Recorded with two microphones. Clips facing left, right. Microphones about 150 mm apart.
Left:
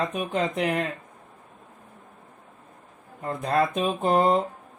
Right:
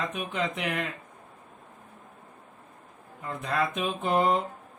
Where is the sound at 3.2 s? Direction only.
40° left (ahead or behind).